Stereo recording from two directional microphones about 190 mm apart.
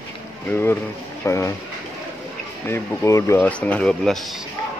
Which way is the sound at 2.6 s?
15° left (ahead or behind).